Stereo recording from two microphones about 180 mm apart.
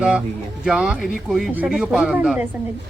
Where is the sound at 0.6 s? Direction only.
5° right (ahead or behind).